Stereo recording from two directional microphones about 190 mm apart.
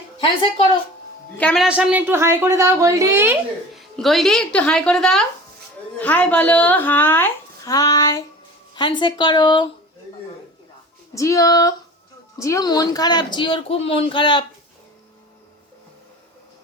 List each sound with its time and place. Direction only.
0.2 s speech: 25° left (ahead or behind)
1.4 s speech: 5° left (ahead or behind)
1.6 s a woman's voice: 5° right (ahead or behind)
3.8 s a woman's voice: centre (ahead or behind); by 9.6 s 25° left (ahead or behind)
11.1 s a woman's voice: 15° left (ahead or behind)